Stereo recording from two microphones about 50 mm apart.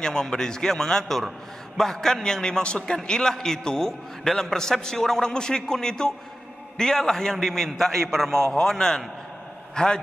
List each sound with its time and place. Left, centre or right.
0.0 s a man's voice: centre